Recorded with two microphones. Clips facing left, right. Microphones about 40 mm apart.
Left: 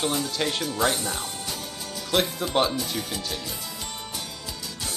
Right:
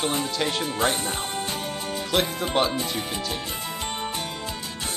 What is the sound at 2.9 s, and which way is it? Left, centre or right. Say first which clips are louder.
Speech: right 2 dB; right.